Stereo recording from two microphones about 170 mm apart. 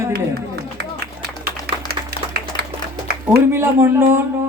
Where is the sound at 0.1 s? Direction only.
70° right (ahead or behind).